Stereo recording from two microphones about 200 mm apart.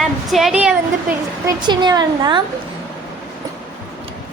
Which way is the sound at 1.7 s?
20° right (ahead or behind).